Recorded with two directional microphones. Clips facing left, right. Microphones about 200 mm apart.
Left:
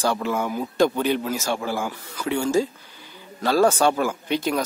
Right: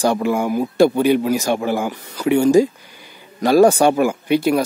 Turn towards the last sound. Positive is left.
turn(degrees=-10)  # may be behind; listen again after turning